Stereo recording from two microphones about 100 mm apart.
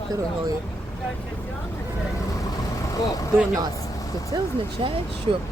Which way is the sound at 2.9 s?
35° left (ahead or behind).